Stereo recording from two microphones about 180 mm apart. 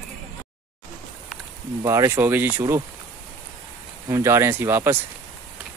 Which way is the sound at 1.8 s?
20° right (ahead or behind).